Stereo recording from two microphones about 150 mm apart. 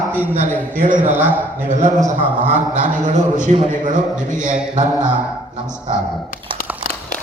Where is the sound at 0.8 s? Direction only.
60° right (ahead or behind).